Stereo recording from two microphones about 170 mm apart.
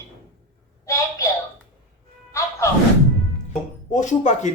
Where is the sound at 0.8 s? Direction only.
20° left (ahead or behind).